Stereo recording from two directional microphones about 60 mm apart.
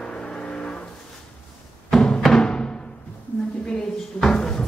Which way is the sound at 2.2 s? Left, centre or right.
Centre.